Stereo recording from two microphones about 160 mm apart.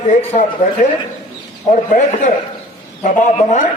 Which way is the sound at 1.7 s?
50° left (ahead or behind).